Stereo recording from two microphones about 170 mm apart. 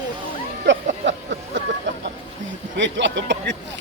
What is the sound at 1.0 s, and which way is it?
Speech, 90° right.